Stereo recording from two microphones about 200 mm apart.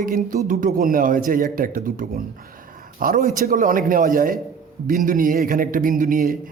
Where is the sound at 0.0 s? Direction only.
45° right (ahead or behind).